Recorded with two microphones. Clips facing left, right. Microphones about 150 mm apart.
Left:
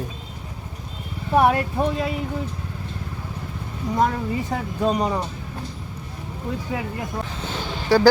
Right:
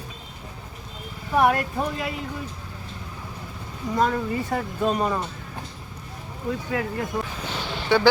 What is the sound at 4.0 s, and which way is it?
A woman's voice, 15° left (ahead or behind).